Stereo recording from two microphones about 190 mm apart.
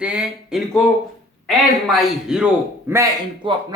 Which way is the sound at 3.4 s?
25° right (ahead or behind).